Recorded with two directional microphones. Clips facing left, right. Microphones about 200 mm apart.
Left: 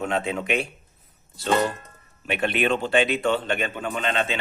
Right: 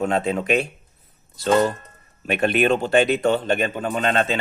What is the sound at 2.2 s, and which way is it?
Speech, 45° right (ahead or behind).